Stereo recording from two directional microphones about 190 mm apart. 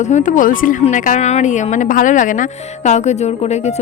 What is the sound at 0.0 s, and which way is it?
Speech, 40° left (ahead or behind).